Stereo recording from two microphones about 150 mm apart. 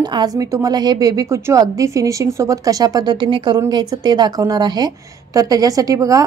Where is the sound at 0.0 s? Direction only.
25° right (ahead or behind).